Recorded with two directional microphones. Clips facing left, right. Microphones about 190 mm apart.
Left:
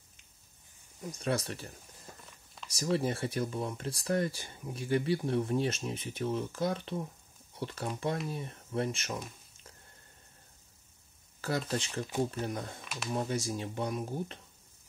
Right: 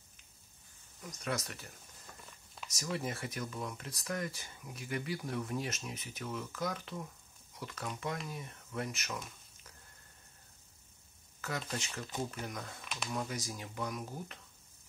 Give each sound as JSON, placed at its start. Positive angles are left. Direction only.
{"t": 1.0, "sound": "speech", "side_deg": 30}
{"t": 2.7, "sound": "speech", "side_deg": 30}
{"t": 11.4, "sound": "speech", "side_deg": 30}
{"t": 12.8, "sound": "a sound", "side_deg": 0}
{"t": 13.1, "sound": "speech", "side_deg": 30}